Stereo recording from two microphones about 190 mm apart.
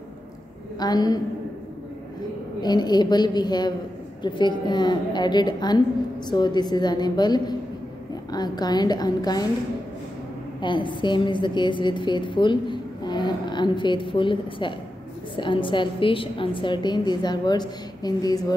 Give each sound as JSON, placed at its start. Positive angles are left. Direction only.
{"t": 0.7, "sound": "a woman's voice", "side_deg": 20}
{"t": 2.6, "sound": "a woman's voice", "side_deg": 20}
{"t": 10.6, "sound": "a woman's voice", "side_deg": 25}